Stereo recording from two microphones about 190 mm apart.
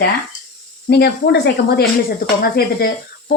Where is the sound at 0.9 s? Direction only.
60° left (ahead or behind).